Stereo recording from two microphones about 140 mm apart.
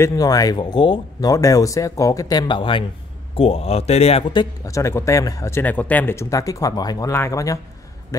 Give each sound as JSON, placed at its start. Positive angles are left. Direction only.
{"t": 0.0, "sound": "speech", "side_deg": 25}
{"t": 4.3, "sound": "speech", "side_deg": 25}